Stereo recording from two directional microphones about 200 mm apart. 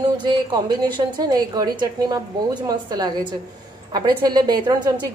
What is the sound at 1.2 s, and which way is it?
A woman's voice, 20° right (ahead or behind).